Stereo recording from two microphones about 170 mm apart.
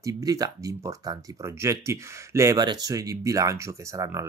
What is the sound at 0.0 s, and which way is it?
Speech, 20° right (ahead or behind).